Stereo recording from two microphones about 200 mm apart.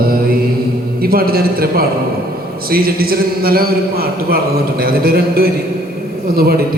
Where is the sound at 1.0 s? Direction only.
50° right (ahead or behind).